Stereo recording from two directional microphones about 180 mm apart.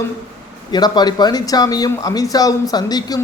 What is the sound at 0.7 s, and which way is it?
Speech, 25° left (ahead or behind).